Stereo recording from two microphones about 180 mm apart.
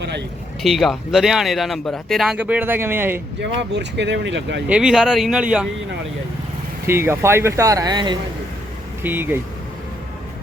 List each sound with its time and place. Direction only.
0.0 s a sound: 70° right (ahead or behind)
0.6 s speech: centre (ahead or behind)
3.4 s speech: 70° right (ahead or behind)
4.7 s speech: 5° right (ahead or behind)
6.8 s speech: 15° right (ahead or behind)
9.0 s speech: 10° right (ahead or behind)